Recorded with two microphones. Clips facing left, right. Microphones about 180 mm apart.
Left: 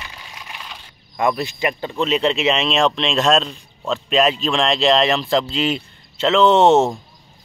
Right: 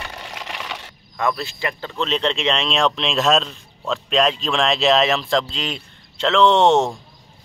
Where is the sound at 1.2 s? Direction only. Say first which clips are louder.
Left 3 dB; 15° left (ahead or behind).